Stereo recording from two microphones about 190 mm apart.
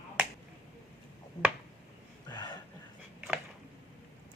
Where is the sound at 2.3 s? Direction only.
25° left (ahead or behind).